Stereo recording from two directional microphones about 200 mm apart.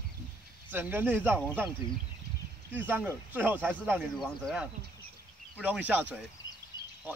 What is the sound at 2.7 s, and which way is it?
Speech, 10° right (ahead or behind).